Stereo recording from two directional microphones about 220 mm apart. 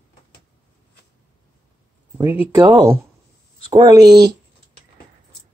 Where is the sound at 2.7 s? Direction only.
15° right (ahead or behind).